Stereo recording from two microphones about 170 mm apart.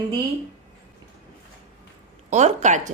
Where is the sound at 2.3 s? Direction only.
45° right (ahead or behind).